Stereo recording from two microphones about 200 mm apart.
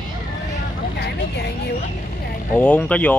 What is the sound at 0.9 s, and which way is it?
Speech, 55° left (ahead or behind).